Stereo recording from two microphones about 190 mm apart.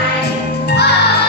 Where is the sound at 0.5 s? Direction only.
60° left (ahead or behind).